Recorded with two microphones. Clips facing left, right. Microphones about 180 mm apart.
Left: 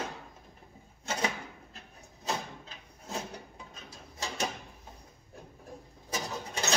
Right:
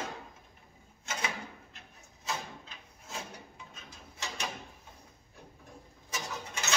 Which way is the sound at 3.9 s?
35° left (ahead or behind).